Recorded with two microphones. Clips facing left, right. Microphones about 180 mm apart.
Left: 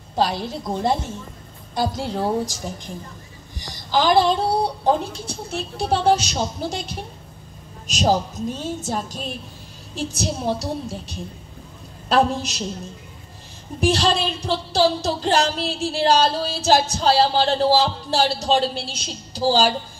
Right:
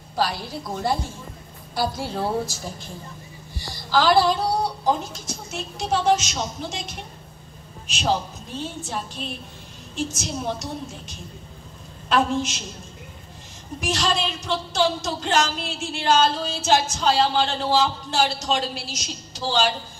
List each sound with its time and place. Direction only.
0.1 s a woman's voice: 20° left (ahead or behind); by 12.6 s 35° left (ahead or behind)
13.7 s speech: 35° left (ahead or behind)